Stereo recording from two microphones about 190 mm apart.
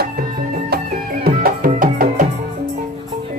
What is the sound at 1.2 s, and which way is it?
Music, 50° right (ahead or behind).